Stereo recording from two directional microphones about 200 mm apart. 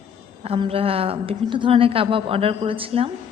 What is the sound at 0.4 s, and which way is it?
A woman's voice, 30° right (ahead or behind).